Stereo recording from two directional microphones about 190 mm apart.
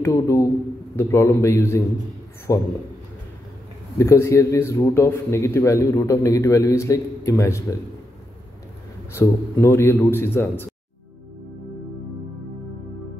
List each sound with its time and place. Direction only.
0.0 s a man's voice: 15° left (ahead or behind)
4.0 s a man's voice: 15° left (ahead or behind)
9.1 s a man's voice: 15° left (ahead or behind)